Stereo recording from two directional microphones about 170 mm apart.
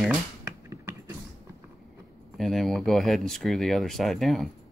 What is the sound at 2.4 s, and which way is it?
Speech, centre (ahead or behind).